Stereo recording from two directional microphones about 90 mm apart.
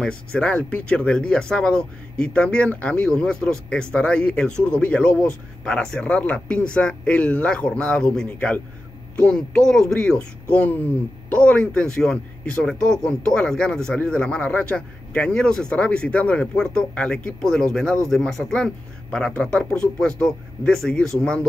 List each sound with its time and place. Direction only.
0.0 s speech: 10° left (ahead or behind)